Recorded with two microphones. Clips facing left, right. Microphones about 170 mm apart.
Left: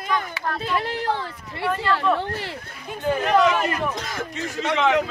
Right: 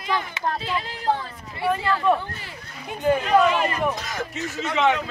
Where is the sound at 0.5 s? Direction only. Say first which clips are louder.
Left 3 dB; 60° left (ahead or behind).